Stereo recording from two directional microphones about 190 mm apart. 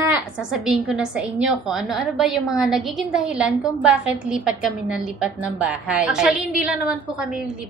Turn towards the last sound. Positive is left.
turn(degrees=-5)  # may be behind; listen again after turning